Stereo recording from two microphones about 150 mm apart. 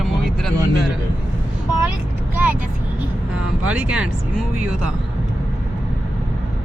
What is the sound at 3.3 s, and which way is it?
Speech, 10° right (ahead or behind).